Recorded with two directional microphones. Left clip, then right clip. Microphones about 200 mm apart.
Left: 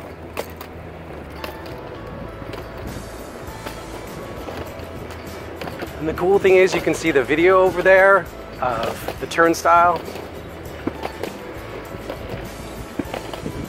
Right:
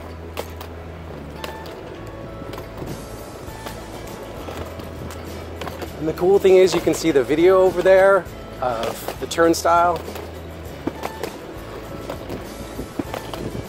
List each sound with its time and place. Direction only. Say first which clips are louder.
6.0 s speech: right 1 dB; centre (ahead or behind)
6.4 s speech: even; 55° right (ahead or behind)
8.1 s speech: left 2 dB; 30° right (ahead or behind)
9.3 s speech: left 1 dB; 50° right (ahead or behind)